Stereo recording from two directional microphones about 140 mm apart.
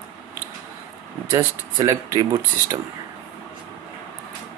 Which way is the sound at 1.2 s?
25° right (ahead or behind).